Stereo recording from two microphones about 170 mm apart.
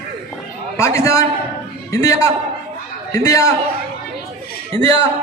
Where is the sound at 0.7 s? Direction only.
15° left (ahead or behind).